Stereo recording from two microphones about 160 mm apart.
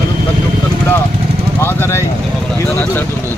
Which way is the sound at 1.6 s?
15° left (ahead or behind).